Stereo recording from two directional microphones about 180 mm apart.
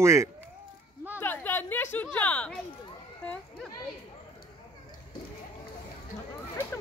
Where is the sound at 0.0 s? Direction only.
15° right (ahead or behind).